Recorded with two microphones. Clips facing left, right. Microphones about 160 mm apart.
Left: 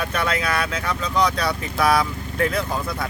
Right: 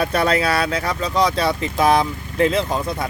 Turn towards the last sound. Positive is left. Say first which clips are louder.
# right 4 dB
turn(degrees=-25)  # may be behind; listen again after turning